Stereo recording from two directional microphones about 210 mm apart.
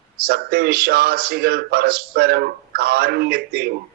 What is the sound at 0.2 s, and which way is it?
Speech, 50° right (ahead or behind).